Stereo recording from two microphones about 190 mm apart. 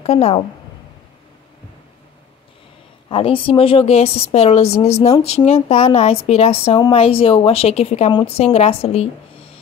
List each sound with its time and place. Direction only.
0.0 s a woman's voice: 30° left (ahead or behind)
3.1 s a woman's voice: 30° left (ahead or behind)
8.1 s a woman's voice: 20° left (ahead or behind)
8.4 s a woman's voice: 35° left (ahead or behind)